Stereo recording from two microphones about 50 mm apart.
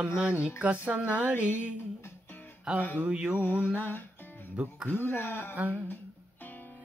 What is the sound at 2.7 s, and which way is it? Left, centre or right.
Speech, centre.